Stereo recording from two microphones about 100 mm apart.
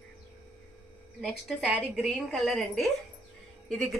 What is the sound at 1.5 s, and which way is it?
A woman's voice, centre (ahead or behind).